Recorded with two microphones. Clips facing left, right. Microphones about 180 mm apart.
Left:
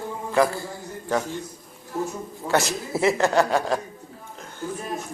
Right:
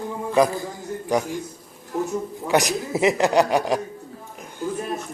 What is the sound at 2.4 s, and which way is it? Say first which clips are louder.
A man's voice: right 2 dB; 15° right (ahead or behind).